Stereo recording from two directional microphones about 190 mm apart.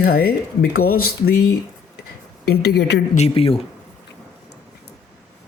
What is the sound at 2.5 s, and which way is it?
Speech, 60° left (ahead or behind).